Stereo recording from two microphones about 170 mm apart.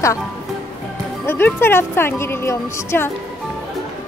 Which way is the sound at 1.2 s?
15° left (ahead or behind).